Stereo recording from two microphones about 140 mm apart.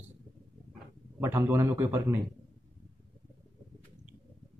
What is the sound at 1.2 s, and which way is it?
Speech, 20° right (ahead or behind).